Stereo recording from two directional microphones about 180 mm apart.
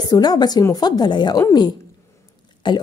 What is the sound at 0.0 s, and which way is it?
A woman's voice, 20° left (ahead or behind).